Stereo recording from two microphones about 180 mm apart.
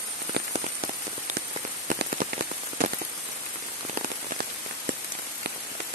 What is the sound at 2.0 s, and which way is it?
Rain on surface, 50° right (ahead or behind).